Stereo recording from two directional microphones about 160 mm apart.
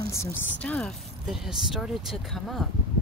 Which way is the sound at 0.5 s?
5° left (ahead or behind).